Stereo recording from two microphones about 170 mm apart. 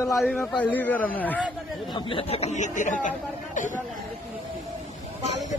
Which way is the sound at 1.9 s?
30° left (ahead or behind).